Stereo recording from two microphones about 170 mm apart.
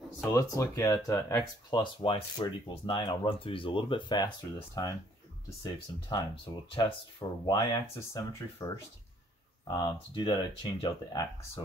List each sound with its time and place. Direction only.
0.2 s speech: 15° left (ahead or behind)
9.7 s speech: 25° left (ahead or behind)